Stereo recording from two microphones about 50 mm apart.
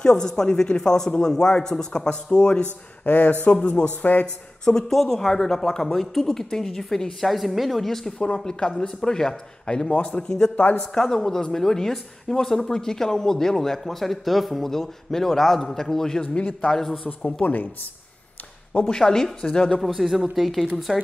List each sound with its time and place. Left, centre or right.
0.0 s a woman's voice: centre
3.1 s speech: left
3.6 s speech: left
4.0 s speech: left
4.6 s speech: centre
8.5 s a woman's voice: centre
9.9 s speech: left
10.8 s a woman's voice: centre
16.3 s speech: left
18.7 s speech: left
18.9 s a woman's voice: centre
19.8 s speech: centre